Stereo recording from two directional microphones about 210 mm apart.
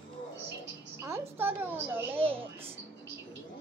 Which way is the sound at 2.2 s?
25° right (ahead or behind).